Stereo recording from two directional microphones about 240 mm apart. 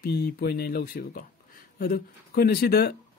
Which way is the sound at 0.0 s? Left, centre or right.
Left.